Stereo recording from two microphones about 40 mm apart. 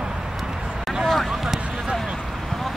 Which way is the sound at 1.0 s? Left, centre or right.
Centre.